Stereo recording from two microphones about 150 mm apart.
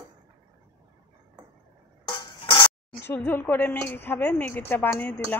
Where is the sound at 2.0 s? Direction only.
30° left (ahead or behind).